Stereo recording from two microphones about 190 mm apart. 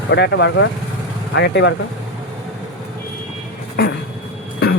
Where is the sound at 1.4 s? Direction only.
65° left (ahead or behind).